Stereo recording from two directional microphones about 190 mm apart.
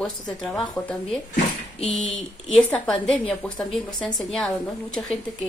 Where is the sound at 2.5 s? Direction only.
5° left (ahead or behind).